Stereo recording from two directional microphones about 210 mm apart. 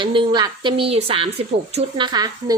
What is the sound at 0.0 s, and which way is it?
A woman's voice, 25° right (ahead or behind).